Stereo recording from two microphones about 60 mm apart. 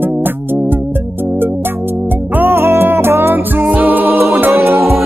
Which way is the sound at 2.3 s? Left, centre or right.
Right.